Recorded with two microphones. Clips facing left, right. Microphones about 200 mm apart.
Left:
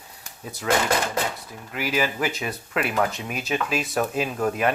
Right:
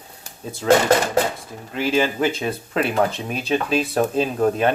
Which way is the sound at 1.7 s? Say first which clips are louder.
Right 5 dB; 25° right (ahead or behind).